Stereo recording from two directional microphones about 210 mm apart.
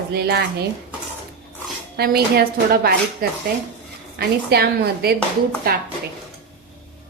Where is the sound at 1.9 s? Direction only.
50° right (ahead or behind).